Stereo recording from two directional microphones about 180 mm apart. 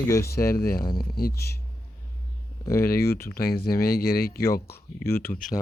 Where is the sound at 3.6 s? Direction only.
60° left (ahead or behind).